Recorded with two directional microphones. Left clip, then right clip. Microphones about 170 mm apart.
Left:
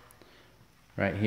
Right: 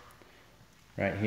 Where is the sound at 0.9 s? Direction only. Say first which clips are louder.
Left 2 dB; 25° left (ahead or behind).